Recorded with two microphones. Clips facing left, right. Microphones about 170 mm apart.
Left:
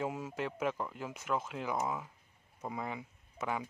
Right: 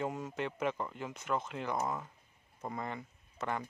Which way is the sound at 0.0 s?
5° left (ahead or behind).